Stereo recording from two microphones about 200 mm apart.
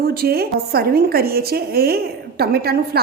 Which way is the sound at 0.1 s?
50° right (ahead or behind).